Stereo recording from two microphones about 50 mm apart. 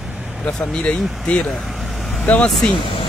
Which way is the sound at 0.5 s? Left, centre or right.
Centre.